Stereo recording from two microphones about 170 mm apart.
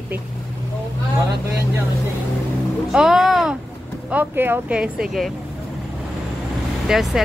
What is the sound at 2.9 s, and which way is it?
Speech, 5° right (ahead or behind).